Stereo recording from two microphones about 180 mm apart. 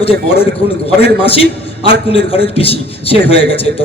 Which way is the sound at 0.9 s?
35° left (ahead or behind).